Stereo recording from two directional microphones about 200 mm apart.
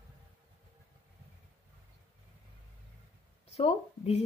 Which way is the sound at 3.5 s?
30° left (ahead or behind).